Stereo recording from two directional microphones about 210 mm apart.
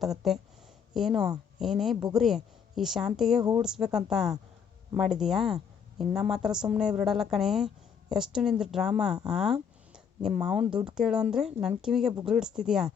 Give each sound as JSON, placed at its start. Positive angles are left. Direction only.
{"t": 0.2, "sound": "a woman's voice", "side_deg": 0}
{"t": 10.7, "sound": "speech", "side_deg": -25}
{"t": 10.9, "sound": "a woman's voice", "side_deg": -5}